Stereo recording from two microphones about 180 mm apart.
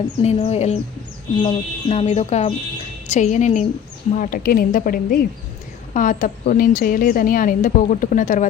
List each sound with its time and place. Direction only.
0.2 s a woman's voice: 35° left (ahead or behind)